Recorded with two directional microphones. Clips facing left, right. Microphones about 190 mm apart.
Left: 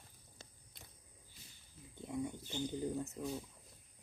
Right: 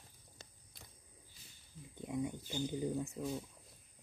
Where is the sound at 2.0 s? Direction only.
15° right (ahead or behind).